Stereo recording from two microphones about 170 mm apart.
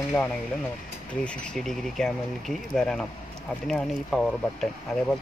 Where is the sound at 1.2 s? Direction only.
5° left (ahead or behind).